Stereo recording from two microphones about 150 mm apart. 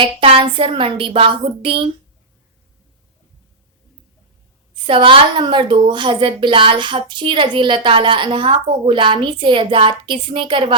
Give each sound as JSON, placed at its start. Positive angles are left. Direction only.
{"t": 0.0, "sound": "a woman's voice", "side_deg": -35}
{"t": 4.9, "sound": "a woman's voice", "side_deg": -35}